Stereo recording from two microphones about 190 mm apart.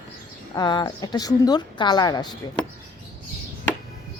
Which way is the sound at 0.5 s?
25° left (ahead or behind).